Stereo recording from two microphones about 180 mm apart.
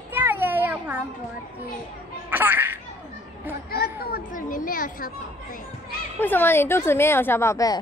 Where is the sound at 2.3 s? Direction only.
10° right (ahead or behind).